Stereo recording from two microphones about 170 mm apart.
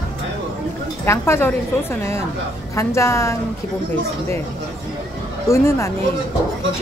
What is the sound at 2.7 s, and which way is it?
Speech, 15° left (ahead or behind).